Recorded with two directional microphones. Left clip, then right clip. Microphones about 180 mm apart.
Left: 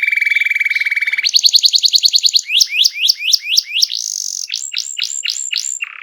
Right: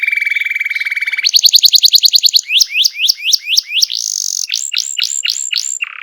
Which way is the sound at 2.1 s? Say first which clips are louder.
Right 2 dB; 25° right (ahead or behind).